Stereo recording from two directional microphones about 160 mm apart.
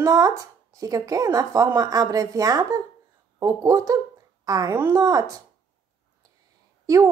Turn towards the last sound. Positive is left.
turn(degrees=-20)  # may be behind; listen again after turning